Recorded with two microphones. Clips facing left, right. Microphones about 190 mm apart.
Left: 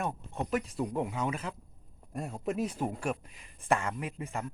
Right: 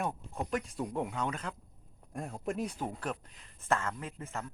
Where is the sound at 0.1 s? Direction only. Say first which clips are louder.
Left 3 dB; 5° left (ahead or behind).